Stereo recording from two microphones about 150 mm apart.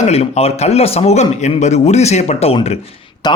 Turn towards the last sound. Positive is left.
turn(degrees=30)  # may be behind; listen again after turning